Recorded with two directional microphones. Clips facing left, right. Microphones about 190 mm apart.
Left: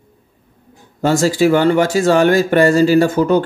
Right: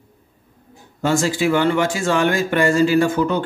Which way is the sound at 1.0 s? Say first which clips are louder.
Left 5 dB; 40° left (ahead or behind).